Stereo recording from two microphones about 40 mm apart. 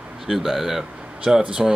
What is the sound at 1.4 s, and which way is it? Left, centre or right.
Speech, right.